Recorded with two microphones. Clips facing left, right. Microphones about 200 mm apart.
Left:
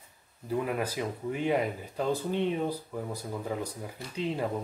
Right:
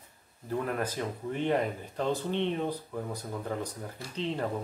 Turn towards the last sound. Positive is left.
turn(degrees=10)  # may be behind; listen again after turning